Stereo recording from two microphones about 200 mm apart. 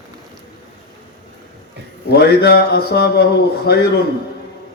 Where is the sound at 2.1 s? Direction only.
55° left (ahead or behind).